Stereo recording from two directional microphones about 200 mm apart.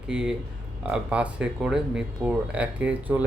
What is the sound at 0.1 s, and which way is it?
Speech, 5° right (ahead or behind).